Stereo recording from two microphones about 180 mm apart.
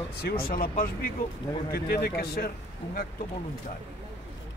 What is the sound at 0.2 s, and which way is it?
Speech, 55° left (ahead or behind).